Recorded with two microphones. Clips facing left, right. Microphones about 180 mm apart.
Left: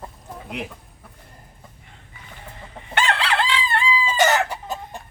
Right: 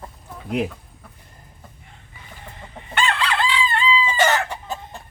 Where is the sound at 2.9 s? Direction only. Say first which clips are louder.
Even; 70° left (ahead or behind).